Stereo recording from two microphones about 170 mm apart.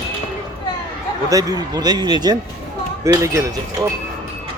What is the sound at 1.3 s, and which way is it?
Speech, 20° right (ahead or behind).